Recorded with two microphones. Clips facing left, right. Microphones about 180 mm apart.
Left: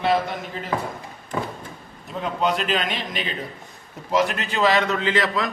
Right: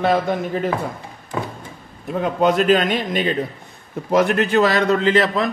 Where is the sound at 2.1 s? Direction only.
50° right (ahead or behind).